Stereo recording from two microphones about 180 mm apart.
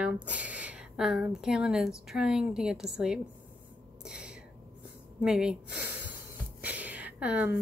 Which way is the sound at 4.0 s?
5° right (ahead or behind).